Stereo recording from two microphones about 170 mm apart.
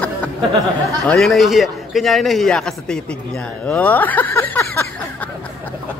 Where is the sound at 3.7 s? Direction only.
10° left (ahead or behind).